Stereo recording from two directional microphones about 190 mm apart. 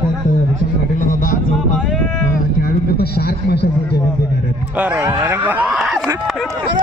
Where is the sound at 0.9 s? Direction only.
45° left (ahead or behind).